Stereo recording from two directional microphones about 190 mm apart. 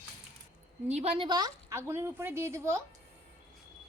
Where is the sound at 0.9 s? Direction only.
35° right (ahead or behind); by 2.8 s 15° right (ahead or behind).